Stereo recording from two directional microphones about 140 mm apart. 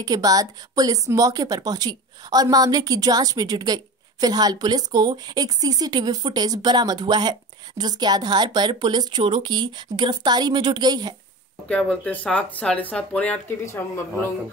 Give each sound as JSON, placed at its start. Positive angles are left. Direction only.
{"t": 0.0, "sound": "a woman's voice", "side_deg": -25}
{"t": 11.7, "sound": "speech", "side_deg": 10}